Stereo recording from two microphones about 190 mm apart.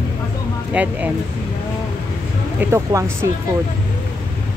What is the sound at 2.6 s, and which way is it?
Speech, 15° right (ahead or behind).